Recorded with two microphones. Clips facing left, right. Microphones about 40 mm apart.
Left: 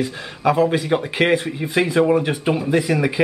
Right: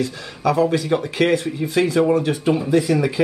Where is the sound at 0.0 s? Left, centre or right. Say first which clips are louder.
Left 1 dB; left.